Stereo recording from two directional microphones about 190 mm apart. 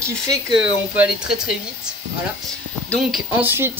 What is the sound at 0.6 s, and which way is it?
Speech, 5° right (ahead or behind).